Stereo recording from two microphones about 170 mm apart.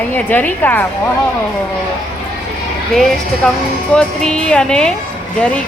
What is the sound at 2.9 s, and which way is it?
A woman's voice, centre (ahead or behind).